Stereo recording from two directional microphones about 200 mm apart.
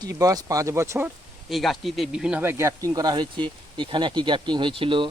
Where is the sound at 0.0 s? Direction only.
15° right (ahead or behind).